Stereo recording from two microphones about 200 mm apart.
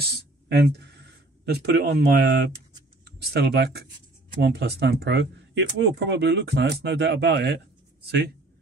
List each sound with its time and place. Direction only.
0.0 s speech: 55° right (ahead or behind)